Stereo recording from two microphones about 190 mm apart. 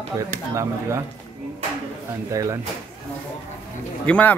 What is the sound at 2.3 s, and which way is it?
Speech, 15° right (ahead or behind).